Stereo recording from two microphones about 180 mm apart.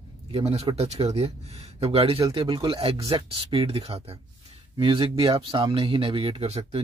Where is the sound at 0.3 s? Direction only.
35° right (ahead or behind).